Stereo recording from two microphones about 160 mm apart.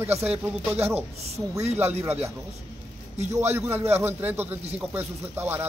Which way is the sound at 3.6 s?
15° right (ahead or behind).